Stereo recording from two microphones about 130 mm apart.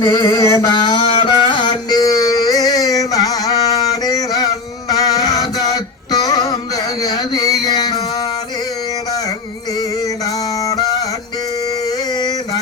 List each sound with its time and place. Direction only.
0.0 s music: 30° left (ahead or behind)
0.8 s carnatic music: 40° left (ahead or behind)
7.0 s a sound: 30° left (ahead or behind)
10.7 s music: 30° left (ahead or behind)